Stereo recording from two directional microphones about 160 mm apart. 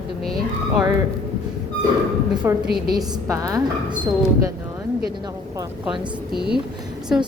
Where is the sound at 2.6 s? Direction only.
80° right.